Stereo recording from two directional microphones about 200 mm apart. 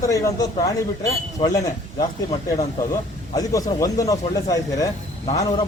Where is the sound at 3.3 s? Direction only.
20° left (ahead or behind).